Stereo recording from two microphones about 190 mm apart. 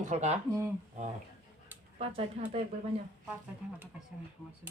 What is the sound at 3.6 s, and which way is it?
Speech, 10° right (ahead or behind).